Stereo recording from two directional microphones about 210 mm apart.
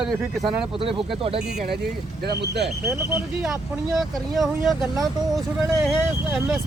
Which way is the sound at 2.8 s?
15° right (ahead or behind).